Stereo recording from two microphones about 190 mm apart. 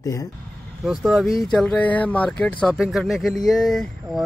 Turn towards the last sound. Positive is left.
turn(degrees=0)  # may be behind; listen again after turning